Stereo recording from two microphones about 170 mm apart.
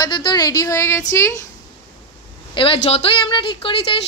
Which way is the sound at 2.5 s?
30° left (ahead or behind).